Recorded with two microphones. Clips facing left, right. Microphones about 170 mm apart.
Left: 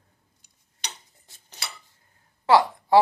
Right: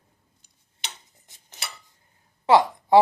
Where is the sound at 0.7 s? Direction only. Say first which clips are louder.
Left 1 dB; 20° right (ahead or behind).